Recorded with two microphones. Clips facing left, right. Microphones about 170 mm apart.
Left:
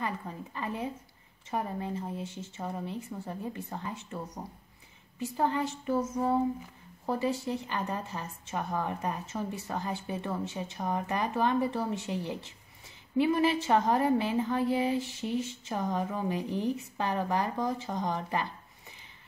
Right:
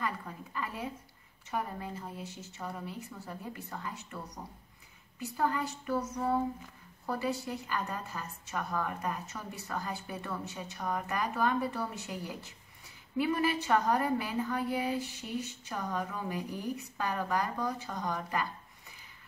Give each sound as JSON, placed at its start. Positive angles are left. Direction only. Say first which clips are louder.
{"t": 0.6, "sound": "a woman's voice", "louder": "left 3 dB", "side_deg": 25}
{"t": 5.4, "sound": "a woman's voice", "louder": "left 2 dB", "side_deg": 25}
{"t": 7.1, "sound": "a woman's voice", "louder": "left 4 dB", "side_deg": 25}